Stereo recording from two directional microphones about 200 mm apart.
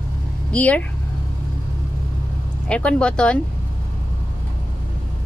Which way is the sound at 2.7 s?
5° left (ahead or behind).